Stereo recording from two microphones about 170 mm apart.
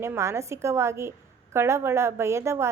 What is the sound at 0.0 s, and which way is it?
A woman's voice, 15° right (ahead or behind).